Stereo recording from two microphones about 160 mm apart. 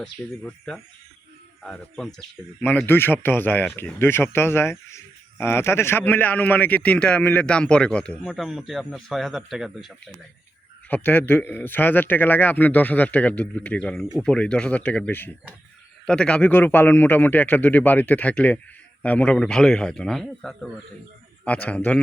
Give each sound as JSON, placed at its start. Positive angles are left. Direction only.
{"t": 0.0, "sound": "a man's voice", "side_deg": 5}
{"t": 10.8, "sound": "a man's voice", "side_deg": 10}